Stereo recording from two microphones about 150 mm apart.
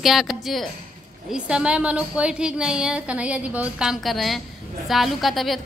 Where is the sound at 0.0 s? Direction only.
Centre (ahead or behind).